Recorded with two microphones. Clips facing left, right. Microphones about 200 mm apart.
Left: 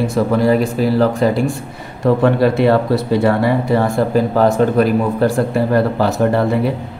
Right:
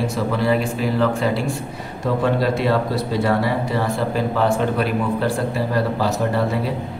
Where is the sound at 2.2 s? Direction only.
60° left (ahead or behind).